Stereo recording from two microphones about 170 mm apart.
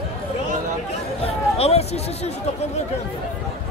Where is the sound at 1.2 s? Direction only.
35° left (ahead or behind).